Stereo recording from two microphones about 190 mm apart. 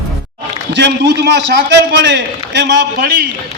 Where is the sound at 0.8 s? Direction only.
65° right (ahead or behind).